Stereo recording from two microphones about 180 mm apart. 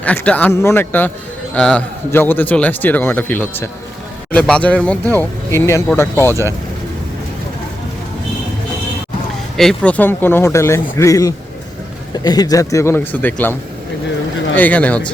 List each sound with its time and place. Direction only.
0.0 s a man's voice: 10° left (ahead or behind)
9.6 s a man's voice: 5° left (ahead or behind)
14.5 s a man's voice: 10° left (ahead or behind)